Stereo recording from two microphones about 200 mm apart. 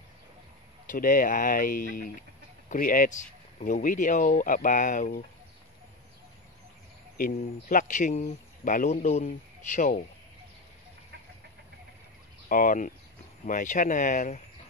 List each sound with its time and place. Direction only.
0.8 s speech: 40° left (ahead or behind)
7.2 s speech: 45° left (ahead or behind)
12.4 s speech: 45° left (ahead or behind)